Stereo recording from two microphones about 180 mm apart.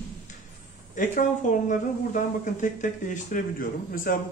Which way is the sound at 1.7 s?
45° left (ahead or behind).